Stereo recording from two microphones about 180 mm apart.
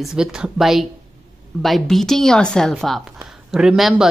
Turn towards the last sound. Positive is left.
turn(degrees=0)  # may be behind; listen again after turning